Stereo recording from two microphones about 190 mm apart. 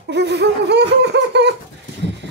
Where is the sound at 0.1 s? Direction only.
65° right (ahead or behind).